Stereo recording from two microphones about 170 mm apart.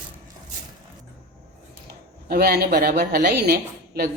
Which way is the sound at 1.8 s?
60° right (ahead or behind).